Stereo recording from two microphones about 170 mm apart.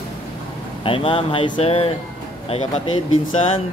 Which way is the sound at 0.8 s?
30° left (ahead or behind).